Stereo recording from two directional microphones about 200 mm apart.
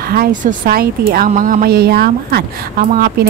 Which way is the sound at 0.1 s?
45° right (ahead or behind).